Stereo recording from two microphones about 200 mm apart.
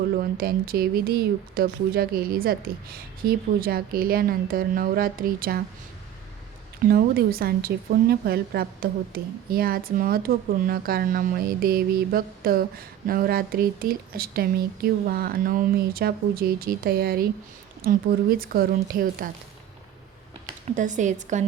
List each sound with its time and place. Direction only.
0.2 s a woman's voice: 50° right (ahead or behind)
6.8 s a woman's voice: 50° right (ahead or behind)
20.7 s speech: 40° right (ahead or behind)